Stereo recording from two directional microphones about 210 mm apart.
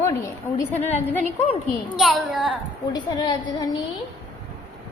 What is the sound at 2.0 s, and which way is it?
Speech, centre (ahead or behind).